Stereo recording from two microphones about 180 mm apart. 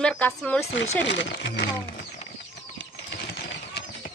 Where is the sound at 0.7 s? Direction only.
80° left.